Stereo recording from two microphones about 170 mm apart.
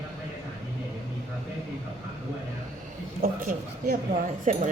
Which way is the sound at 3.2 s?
60° right (ahead or behind).